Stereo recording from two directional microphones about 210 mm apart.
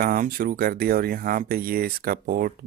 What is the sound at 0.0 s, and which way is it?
Speech, 40° right (ahead or behind).